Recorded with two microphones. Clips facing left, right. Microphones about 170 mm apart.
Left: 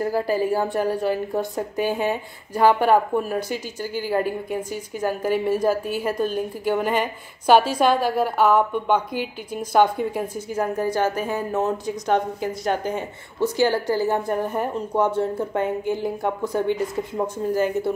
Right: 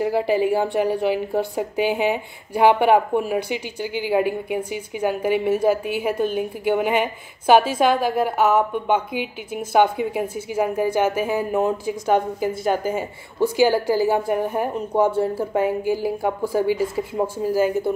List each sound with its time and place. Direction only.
0.0 s a woman's voice: 20° right (ahead or behind)
7.4 s a woman's voice: 50° right (ahead or behind)
8.5 s a woman's voice: 5° right (ahead or behind)